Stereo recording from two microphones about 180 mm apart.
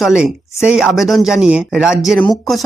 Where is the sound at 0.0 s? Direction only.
5° right (ahead or behind).